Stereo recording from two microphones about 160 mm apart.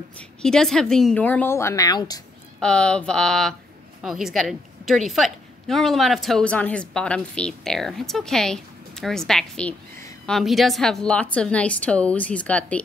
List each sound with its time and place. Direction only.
0.4 s a woman's voice: 5° left (ahead or behind); by 2.2 s 25° left (ahead or behind)
2.6 s a woman's voice: 5° left (ahead or behind)